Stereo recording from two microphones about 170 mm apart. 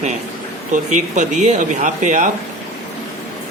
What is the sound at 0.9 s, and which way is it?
Speech, 45° right (ahead or behind).